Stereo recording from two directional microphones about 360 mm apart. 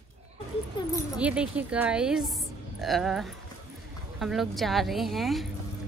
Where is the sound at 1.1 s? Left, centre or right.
Centre.